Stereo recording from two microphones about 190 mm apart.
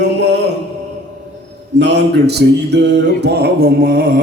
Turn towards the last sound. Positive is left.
turn(degrees=-55)  # may be behind; listen again after turning